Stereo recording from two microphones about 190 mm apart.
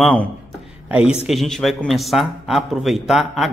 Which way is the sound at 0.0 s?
5° left (ahead or behind).